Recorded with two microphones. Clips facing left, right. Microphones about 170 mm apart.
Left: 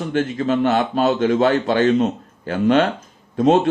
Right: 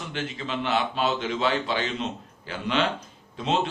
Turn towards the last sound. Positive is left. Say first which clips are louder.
# left 12 dB
turn(degrees=50)  # may be behind; listen again after turning